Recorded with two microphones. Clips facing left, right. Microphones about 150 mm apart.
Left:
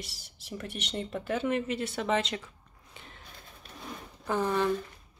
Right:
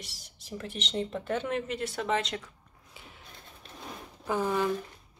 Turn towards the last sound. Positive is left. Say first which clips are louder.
# even
turn(degrees=-10)  # may be behind; listen again after turning